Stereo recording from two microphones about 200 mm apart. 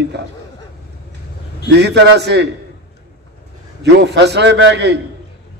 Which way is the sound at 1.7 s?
60° right (ahead or behind).